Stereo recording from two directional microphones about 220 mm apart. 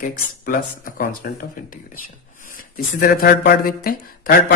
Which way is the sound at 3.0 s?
40° left (ahead or behind).